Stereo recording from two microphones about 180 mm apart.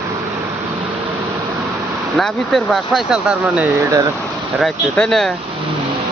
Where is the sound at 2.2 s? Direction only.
Centre (ahead or behind).